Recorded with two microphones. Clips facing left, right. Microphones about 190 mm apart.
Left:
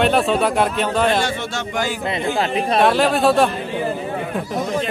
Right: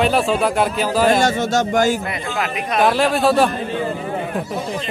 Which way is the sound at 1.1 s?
45° right (ahead or behind).